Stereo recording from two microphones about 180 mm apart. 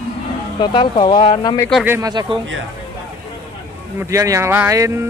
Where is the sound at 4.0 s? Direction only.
15° right (ahead or behind).